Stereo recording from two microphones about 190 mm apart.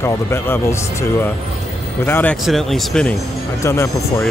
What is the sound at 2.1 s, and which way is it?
Speech, 10° left (ahead or behind).